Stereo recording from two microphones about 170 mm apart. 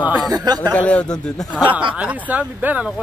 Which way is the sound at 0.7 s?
10° left (ahead or behind).